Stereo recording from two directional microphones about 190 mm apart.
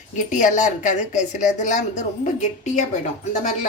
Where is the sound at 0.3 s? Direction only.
40° left (ahead or behind).